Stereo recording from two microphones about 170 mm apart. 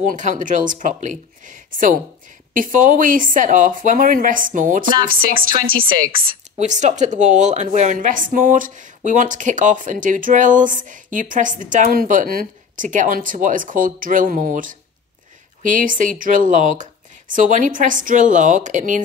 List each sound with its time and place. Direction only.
0.1 s speech: 45° right (ahead or behind)
4.8 s a woman's voice: 30° right (ahead or behind)
6.6 s speech: 45° right (ahead or behind)